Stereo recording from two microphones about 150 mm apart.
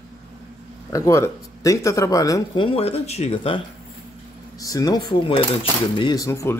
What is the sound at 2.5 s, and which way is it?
Speech, 35° left (ahead or behind).